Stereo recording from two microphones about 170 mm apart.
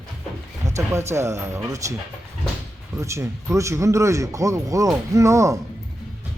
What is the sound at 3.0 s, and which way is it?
A man's voice, 15° right (ahead or behind).